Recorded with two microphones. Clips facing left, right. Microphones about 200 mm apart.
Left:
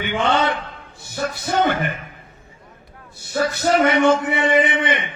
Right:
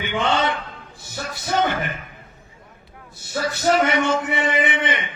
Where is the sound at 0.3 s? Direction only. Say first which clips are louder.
Left 2 dB; 55° left (ahead or behind).